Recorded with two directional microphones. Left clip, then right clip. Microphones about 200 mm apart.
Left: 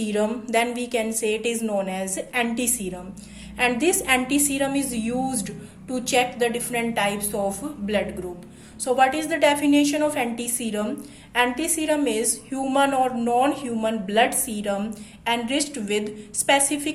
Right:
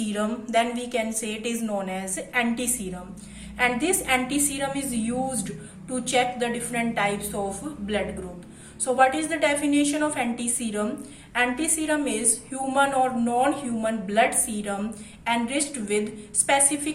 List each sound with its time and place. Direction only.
0.0 s a woman's voice: 40° left (ahead or behind)
8.8 s a woman's voice: 35° left (ahead or behind)